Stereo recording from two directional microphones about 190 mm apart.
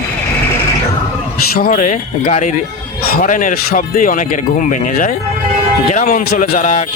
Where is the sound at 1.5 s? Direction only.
45° left (ahead or behind).